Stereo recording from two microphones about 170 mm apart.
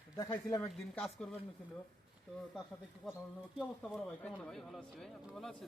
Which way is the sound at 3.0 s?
Centre (ahead or behind).